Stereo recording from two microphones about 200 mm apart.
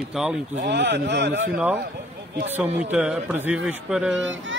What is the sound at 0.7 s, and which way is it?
Speech, 60° right (ahead or behind).